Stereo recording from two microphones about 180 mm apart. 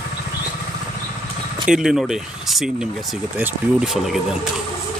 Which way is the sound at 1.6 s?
5° right (ahead or behind).